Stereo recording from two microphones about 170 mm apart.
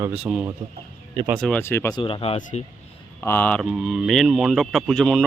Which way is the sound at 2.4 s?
45° left (ahead or behind).